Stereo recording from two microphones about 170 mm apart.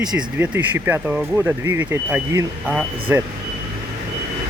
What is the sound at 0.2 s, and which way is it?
Speech, 10° right (ahead or behind).